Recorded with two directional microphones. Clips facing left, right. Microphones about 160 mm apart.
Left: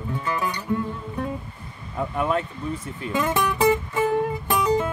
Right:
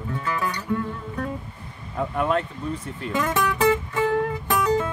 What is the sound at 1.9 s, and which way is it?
Speech, centre (ahead or behind).